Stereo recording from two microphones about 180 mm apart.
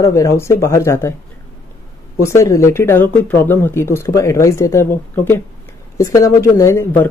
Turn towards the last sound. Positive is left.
turn(degrees=10)  # may be behind; listen again after turning